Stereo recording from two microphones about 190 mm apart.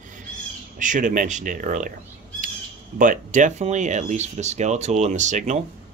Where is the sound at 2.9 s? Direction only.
45° right (ahead or behind).